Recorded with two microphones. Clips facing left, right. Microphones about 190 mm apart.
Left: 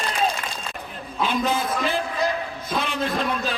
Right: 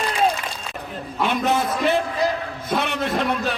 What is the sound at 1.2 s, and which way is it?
Speech, 65° right (ahead or behind).